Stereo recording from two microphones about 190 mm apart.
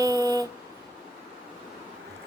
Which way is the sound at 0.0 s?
20° right (ahead or behind).